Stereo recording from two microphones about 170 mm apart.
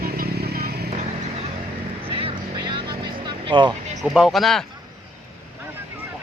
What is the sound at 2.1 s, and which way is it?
Vehicle, 30° right (ahead or behind).